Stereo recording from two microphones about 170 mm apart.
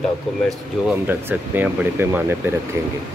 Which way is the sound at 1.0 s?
10° right (ahead or behind).